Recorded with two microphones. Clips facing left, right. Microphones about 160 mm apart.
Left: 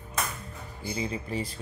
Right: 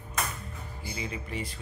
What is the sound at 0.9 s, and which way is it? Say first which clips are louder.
Speech: left 5 dB; 35° left (ahead or behind).